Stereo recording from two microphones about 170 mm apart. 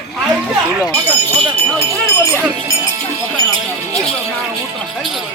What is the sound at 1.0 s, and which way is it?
Speech, 35° right (ahead or behind).